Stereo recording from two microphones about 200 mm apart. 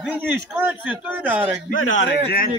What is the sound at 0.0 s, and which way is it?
A man's voice, 10° right (ahead or behind).